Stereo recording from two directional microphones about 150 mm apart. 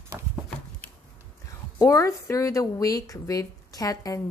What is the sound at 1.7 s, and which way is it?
Speech, 20° left (ahead or behind).